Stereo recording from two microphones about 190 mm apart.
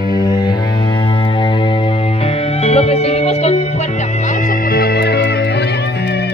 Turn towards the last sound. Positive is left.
turn(degrees=60)  # may be behind; listen again after turning